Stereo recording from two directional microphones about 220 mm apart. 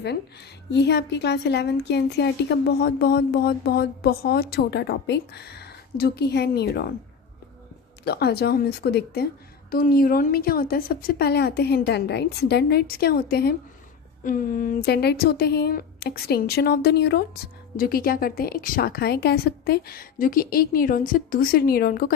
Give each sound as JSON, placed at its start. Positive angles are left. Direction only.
{"t": 0.7, "sound": "speech", "side_deg": 50}
{"t": 8.0, "sound": "a woman's voice", "side_deg": 45}